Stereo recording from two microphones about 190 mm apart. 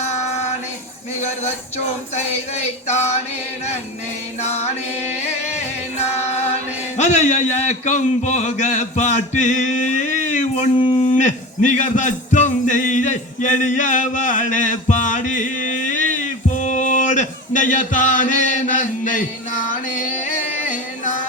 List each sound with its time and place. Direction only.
4.4 s music: 35° left (ahead or behind)
6.9 s speech: 40° left (ahead or behind)
10.8 s speech: 25° left (ahead or behind)
11.0 s a sound: 40° left (ahead or behind)
20.7 s music: 40° left (ahead or behind)